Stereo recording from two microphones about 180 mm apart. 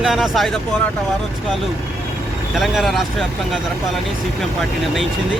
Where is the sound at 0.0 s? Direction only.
Centre (ahead or behind).